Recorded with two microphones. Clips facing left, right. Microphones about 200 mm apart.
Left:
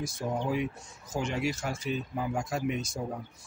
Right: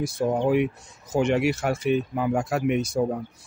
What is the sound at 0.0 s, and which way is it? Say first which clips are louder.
Speech: right 9 dB; 70° right (ahead or behind).